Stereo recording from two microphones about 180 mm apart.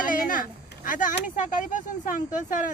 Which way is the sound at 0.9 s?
45° left (ahead or behind).